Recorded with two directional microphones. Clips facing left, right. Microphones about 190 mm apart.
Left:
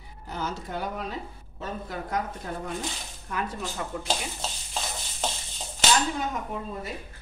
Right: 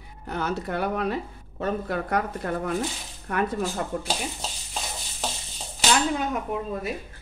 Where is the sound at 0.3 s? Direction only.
65° right (ahead or behind).